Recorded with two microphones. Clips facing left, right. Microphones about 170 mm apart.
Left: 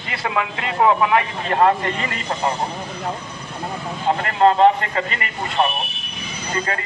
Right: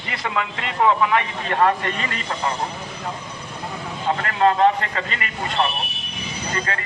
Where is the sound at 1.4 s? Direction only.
25° left (ahead or behind).